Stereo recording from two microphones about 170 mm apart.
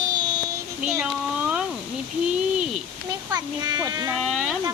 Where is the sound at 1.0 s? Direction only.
5° right (ahead or behind).